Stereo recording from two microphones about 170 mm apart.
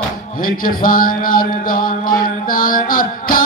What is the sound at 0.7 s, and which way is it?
Music, 55° left (ahead or behind).